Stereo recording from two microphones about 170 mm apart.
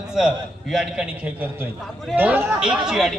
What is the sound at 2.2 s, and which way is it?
Speech, 10° right (ahead or behind).